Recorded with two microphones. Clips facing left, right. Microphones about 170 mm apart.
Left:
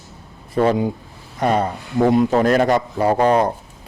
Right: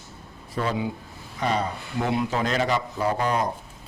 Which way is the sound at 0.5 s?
55° left (ahead or behind).